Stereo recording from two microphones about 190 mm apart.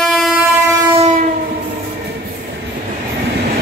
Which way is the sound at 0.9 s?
40° right (ahead or behind).